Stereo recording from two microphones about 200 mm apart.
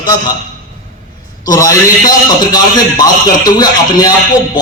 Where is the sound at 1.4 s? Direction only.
15° left (ahead or behind).